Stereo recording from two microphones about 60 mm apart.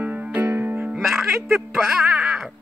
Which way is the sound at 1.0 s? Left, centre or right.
Centre.